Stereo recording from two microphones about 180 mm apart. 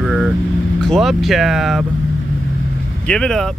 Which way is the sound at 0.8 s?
Centre (ahead or behind).